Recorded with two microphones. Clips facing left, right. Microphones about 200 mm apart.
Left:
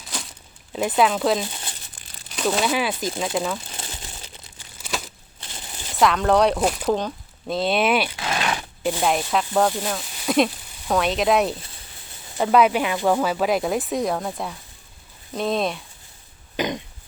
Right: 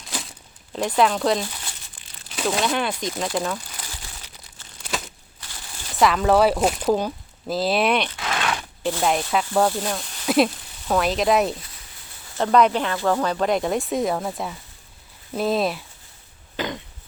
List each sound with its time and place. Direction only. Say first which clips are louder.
0.7 s speech: even; 5° left (ahead or behind)
3.7 s crumpling: left 3 dB; 25° left (ahead or behind)
4.5 s crumpling: even; 5° left (ahead or behind)
5.4 s a sound: left 3 dB; 20° left (ahead or behind)
6.0 s speech: right 1 dB; centre (ahead or behind)
9.0 s speech: right 1 dB; centre (ahead or behind)
16.6 s a sound: left 3 dB; 20° left (ahead or behind)